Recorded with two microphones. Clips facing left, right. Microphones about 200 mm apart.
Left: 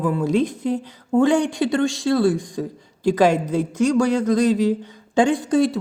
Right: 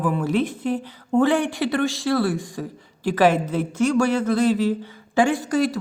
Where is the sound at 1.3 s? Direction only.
15° left (ahead or behind).